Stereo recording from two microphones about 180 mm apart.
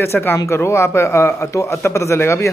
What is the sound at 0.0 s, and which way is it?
A man's voice, 15° left (ahead or behind).